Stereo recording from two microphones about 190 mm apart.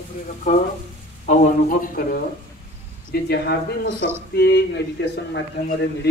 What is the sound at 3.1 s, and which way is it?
A man's voice, 60° left (ahead or behind).